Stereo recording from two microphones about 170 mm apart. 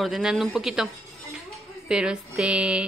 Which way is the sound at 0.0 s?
5° right (ahead or behind).